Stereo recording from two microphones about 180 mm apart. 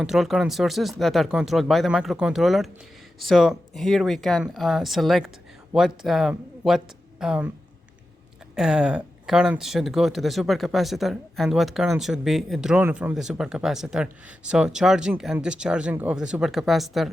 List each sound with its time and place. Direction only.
0.0 s speech: centre (ahead or behind)
8.5 s speech: 5° right (ahead or behind)